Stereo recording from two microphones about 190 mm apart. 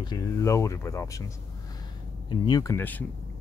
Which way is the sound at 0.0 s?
20° left (ahead or behind).